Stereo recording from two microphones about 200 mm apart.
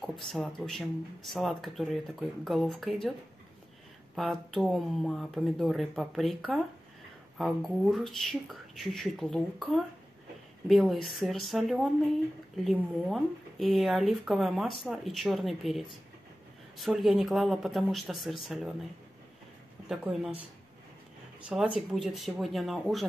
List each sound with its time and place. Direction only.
0.3 s speech: centre (ahead or behind)
4.1 s speech: centre (ahead or behind)
19.9 s speech: centre (ahead or behind)
21.5 s speech: 5° right (ahead or behind)